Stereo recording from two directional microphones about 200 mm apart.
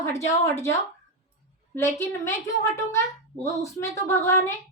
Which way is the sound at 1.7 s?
15° left (ahead or behind).